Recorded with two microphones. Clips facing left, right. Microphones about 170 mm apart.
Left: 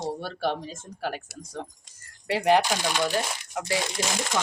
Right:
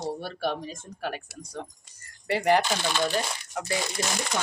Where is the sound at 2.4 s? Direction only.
15° left (ahead or behind).